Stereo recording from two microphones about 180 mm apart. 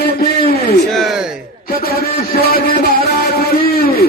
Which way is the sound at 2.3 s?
60° left (ahead or behind).